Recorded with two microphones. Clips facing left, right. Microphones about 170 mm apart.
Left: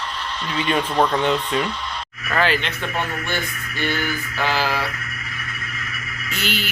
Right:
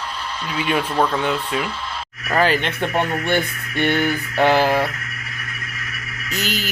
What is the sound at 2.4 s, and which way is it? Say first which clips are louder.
Speech: right 3 dB; 45° right (ahead or behind).